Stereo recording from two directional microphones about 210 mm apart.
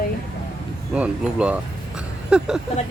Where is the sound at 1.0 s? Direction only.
5° right (ahead or behind).